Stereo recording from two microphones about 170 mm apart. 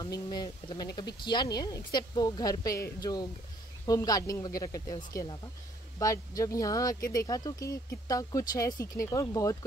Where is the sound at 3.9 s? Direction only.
20° left (ahead or behind).